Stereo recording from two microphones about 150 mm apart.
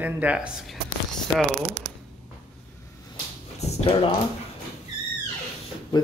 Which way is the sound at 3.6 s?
40° left (ahead or behind).